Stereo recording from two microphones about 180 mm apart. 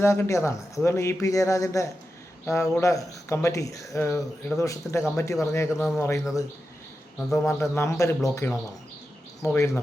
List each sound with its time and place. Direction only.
0.0 s speech: 15° left (ahead or behind)
7.4 s speech: 15° left (ahead or behind)
9.6 s speech: 15° left (ahead or behind)